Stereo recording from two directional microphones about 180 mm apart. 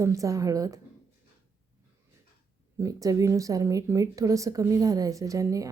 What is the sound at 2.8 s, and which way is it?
A woman's voice, 20° right (ahead or behind).